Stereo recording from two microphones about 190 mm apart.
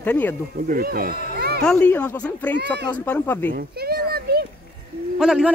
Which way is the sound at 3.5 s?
50° right (ahead or behind).